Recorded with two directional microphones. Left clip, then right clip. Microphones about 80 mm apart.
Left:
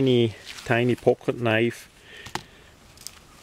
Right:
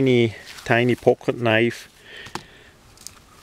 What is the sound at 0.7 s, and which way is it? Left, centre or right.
Speech, right.